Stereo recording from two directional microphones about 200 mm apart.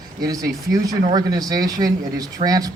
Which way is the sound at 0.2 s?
20° right (ahead or behind).